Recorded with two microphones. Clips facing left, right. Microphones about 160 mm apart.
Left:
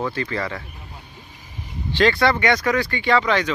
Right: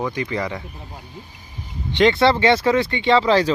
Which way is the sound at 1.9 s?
20° right (ahead or behind).